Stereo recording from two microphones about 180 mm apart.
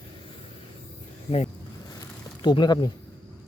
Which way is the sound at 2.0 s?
25° left (ahead or behind).